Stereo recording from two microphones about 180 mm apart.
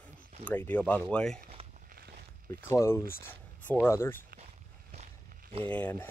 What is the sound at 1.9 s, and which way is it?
Walk, 60° right (ahead or behind).